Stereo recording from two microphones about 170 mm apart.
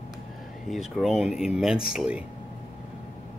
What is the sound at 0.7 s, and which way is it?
Speech, centre (ahead or behind).